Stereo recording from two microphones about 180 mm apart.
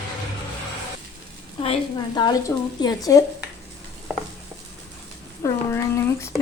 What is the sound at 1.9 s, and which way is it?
Speech, 25° left (ahead or behind).